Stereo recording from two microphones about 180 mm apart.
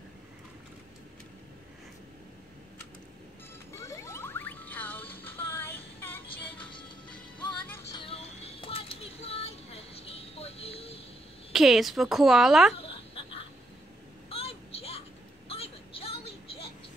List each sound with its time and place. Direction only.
3.7 s music: 15° left (ahead or behind)
6.7 s music: 25° left (ahead or behind)
7.6 s music: 10° left (ahead or behind)
7.9 s a sound: 30° left (ahead or behind)
11.5 s speech: centre (ahead or behind)
12.7 s a sound: 30° left (ahead or behind)